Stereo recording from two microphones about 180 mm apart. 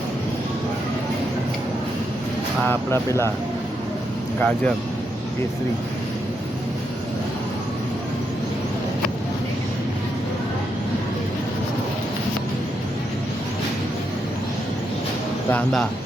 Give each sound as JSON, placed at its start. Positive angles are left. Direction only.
{"t": 2.6, "sound": "speech", "side_deg": 15}
{"t": 4.4, "sound": "speech", "side_deg": 5}